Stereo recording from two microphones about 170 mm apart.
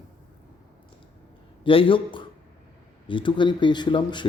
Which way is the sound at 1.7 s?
30° left (ahead or behind).